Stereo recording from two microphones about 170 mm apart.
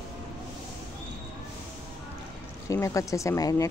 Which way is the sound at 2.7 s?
20° left (ahead or behind).